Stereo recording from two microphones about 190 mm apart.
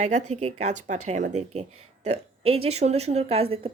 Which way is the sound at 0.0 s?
35° right (ahead or behind).